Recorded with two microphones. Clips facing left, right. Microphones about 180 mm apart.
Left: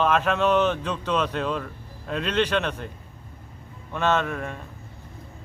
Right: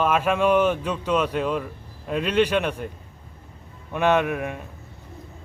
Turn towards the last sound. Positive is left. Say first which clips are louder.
# right 3 dB
turn(degrees=-15)  # may be behind; listen again after turning